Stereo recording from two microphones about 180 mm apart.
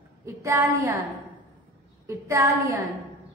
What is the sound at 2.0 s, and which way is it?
Speech, 15° right (ahead or behind).